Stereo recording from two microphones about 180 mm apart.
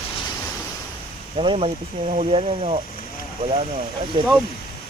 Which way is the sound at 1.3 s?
30° right (ahead or behind).